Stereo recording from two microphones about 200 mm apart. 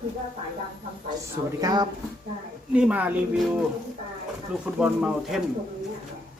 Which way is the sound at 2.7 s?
5° right (ahead or behind).